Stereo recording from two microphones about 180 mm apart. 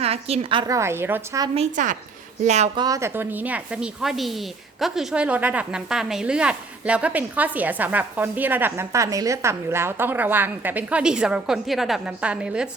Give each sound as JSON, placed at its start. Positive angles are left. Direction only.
{"t": 0.0, "sound": "a woman's voice", "side_deg": -35}
{"t": 0.7, "sound": "a woman's voice", "side_deg": -15}
{"t": 1.5, "sound": "a woman's voice", "side_deg": -40}
{"t": 2.7, "sound": "a woman's voice", "side_deg": -20}